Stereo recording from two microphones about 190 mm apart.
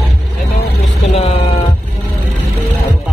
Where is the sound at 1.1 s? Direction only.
30° left (ahead or behind).